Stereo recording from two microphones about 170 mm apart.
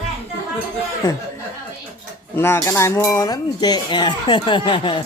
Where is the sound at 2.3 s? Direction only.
15° left (ahead or behind).